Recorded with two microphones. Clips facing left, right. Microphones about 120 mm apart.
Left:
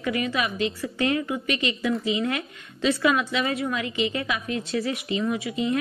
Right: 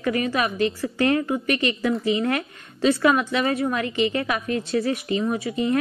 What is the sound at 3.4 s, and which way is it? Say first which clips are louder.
Speech: right 4 dB; 30° right (ahead or behind).